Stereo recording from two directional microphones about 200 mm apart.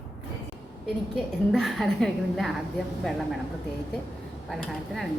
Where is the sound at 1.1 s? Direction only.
Centre (ahead or behind).